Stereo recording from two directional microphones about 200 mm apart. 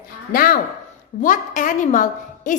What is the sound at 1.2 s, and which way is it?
A woman's voice, 40° left (ahead or behind).